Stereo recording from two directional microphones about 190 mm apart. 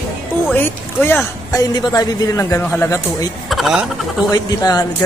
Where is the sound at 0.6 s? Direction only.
10° left (ahead or behind).